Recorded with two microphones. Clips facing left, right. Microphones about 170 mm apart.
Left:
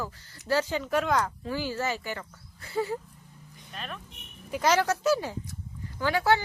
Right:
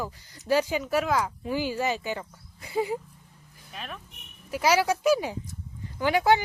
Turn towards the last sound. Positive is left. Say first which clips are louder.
# right 3 dB
turn(degrees=-15)  # may be behind; listen again after turning